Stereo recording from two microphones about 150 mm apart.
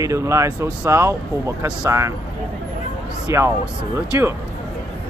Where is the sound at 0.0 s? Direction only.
20° right (ahead or behind).